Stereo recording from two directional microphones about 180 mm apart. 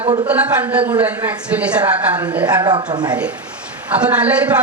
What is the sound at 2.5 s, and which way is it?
Speech, 20° right (ahead or behind).